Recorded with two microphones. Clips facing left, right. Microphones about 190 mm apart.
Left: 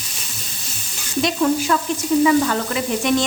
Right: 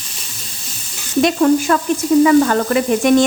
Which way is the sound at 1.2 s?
55° right (ahead or behind).